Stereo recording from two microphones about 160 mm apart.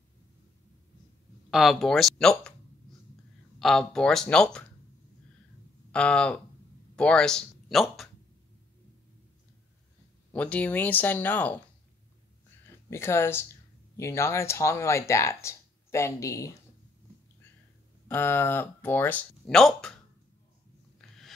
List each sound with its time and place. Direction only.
1.5 s speech: centre (ahead or behind)
3.5 s speech: centre (ahead or behind)
5.9 s speech: 5° left (ahead or behind)
10.3 s speech: 10° left (ahead or behind)
12.9 s speech: 15° left (ahead or behind)
18.0 s speech: 15° left (ahead or behind)
21.0 s a sound: centre (ahead or behind)